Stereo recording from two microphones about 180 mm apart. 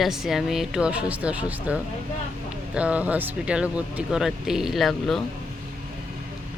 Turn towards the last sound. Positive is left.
turn(degrees=0)  # may be behind; listen again after turning